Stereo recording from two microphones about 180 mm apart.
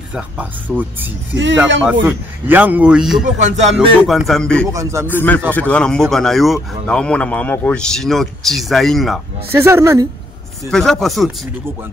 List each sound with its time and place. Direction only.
0.1 s a man's voice: 10° right (ahead or behind)
1.3 s speech: 90° right
2.0 s a man's voice: 10° right (ahead or behind)
3.3 s music: 40° right (ahead or behind)
4.3 s speech: 5° left (ahead or behind)
4.7 s a man's voice: 15° right (ahead or behind)
5.0 s speech: 10° left (ahead or behind)
9.5 s a man's voice: 15° right (ahead or behind)
10.7 s speech: centre (ahead or behind)